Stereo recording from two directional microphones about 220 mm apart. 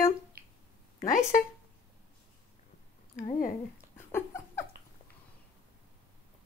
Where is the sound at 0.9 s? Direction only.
35° left (ahead or behind).